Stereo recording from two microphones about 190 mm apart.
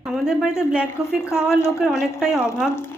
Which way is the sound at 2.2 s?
5° right (ahead or behind).